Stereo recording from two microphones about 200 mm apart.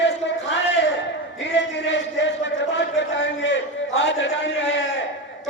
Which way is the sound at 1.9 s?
60° left (ahead or behind).